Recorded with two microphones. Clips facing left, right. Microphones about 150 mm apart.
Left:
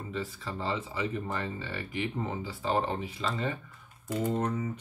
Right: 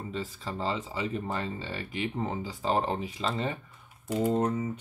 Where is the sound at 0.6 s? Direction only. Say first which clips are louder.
Right 1 dB; 35° right (ahead or behind).